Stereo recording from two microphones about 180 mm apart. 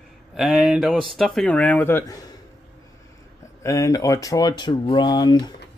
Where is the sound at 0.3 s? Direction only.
Centre (ahead or behind); by 2.2 s 15° left (ahead or behind).